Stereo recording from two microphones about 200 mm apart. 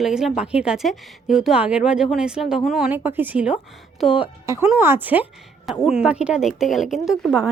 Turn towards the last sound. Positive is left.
turn(degrees=-5)  # may be behind; listen again after turning